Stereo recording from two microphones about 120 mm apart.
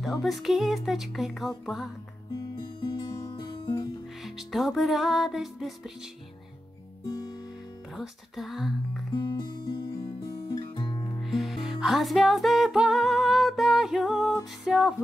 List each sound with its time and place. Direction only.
0.0 s music: centre (ahead or behind)
2.6 s music: 40° left (ahead or behind)
3.1 s music: 25° left (ahead or behind)
3.3 s guitar: 35° left (ahead or behind)
4.2 s music: centre (ahead or behind)
7.9 s music: centre (ahead or behind)
9.1 s music: 35° left (ahead or behind)
11.2 s music: centre (ahead or behind)